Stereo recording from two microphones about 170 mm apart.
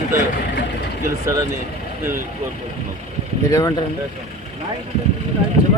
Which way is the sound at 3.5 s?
20° left (ahead or behind).